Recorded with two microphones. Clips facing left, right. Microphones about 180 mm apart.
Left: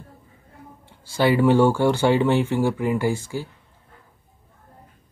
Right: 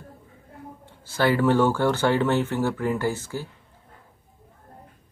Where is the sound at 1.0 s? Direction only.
15° left (ahead or behind).